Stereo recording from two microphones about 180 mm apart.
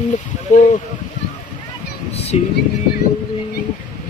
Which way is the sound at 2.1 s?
35° left (ahead or behind).